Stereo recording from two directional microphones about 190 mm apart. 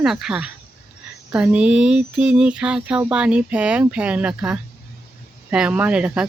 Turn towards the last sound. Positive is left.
turn(degrees=-5)  # may be behind; listen again after turning